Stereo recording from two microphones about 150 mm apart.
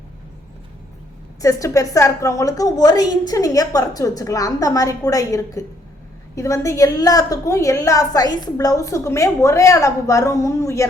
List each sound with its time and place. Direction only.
1.4 s a woman's voice: 20° left (ahead or behind)